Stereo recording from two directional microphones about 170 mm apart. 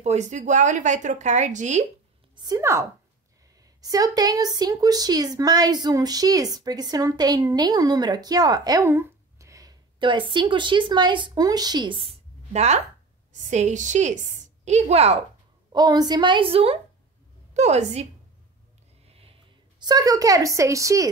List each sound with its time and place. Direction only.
0.0 s speech: 45° right (ahead or behind)
2.3 s a woman's voice: 20° right (ahead or behind)
12.5 s a woman's voice: 40° right (ahead or behind)
15.7 s a woman's voice: 25° right (ahead or behind); by 18.0 s 40° right (ahead or behind)
19.0 s a sound: 35° right (ahead or behind)
19.8 s a woman's voice: 20° right (ahead or behind)